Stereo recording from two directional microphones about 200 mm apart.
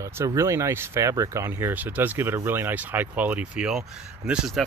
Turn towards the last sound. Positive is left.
turn(degrees=-5)  # may be behind; listen again after turning